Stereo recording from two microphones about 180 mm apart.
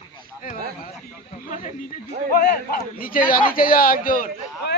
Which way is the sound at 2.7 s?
55° left (ahead or behind).